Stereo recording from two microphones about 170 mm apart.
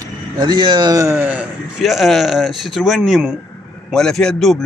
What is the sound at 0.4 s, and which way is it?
Speech, 30° right (ahead or behind).